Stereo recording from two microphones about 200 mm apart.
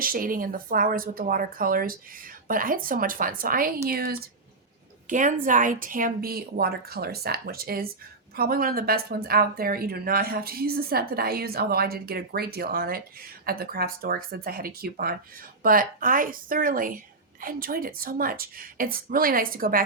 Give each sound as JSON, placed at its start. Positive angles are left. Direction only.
{"t": 0.0, "sound": "speech", "side_deg": -45}